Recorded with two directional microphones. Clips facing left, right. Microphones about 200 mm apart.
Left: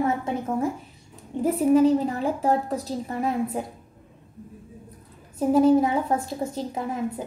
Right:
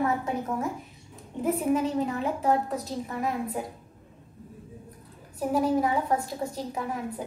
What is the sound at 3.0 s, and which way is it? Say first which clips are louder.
Speech: left 6 dB; 30° left (ahead or behind).